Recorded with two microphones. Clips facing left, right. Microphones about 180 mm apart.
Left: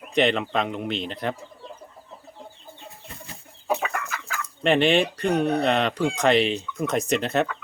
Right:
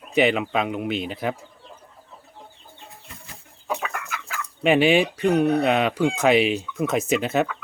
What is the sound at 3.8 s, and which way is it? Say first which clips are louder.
Chicken: left 2 dB; centre (ahead or behind).